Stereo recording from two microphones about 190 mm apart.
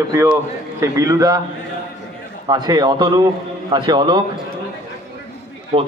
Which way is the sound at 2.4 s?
20° right (ahead or behind).